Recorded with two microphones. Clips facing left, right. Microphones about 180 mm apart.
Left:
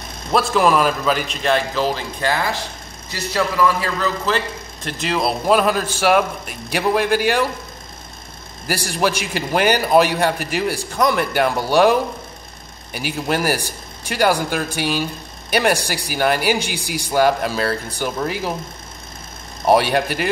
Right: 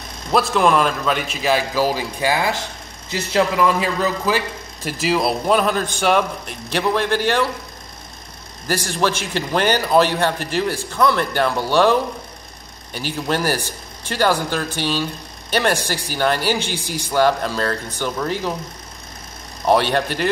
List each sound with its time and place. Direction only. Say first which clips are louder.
0.3 s a man's voice: even; centre (ahead or behind); by 4.4 s 15° right (ahead or behind)
4.8 s a man's voice: right 2 dB; 5° right (ahead or behind)
8.6 s a man's voice: even; 10° left (ahead or behind)
19.6 s a man's voice: left 1 dB; 10° left (ahead or behind)